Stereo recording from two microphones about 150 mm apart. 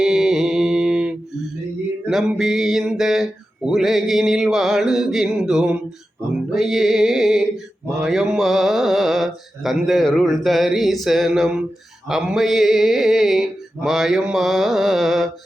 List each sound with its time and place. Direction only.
0.0 s mantra: 5° right (ahead or behind)
2.0 s speech: 5° right (ahead or behind)